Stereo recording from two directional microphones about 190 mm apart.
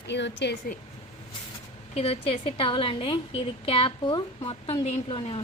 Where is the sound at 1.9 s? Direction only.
30° left (ahead or behind).